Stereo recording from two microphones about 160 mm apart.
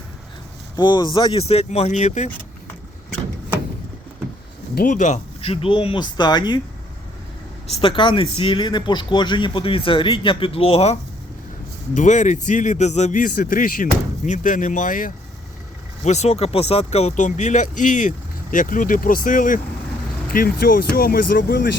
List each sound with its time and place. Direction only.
0.8 s speech: 25° left (ahead or behind); by 2.3 s 45° left (ahead or behind)
4.7 s speech: 60° left (ahead or behind); by 6.6 s 25° left (ahead or behind)
7.8 s speech: 30° left (ahead or behind)
11.9 s speech: 50° left (ahead or behind)
16.0 s speech: 45° left (ahead or behind); by 21.7 s 65° left (ahead or behind)